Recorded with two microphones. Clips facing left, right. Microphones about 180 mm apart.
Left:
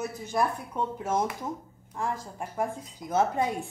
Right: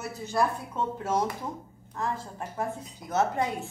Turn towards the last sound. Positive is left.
turn(degrees=15)  # may be behind; listen again after turning